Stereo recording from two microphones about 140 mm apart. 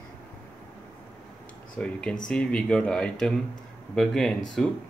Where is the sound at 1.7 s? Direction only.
5° left (ahead or behind).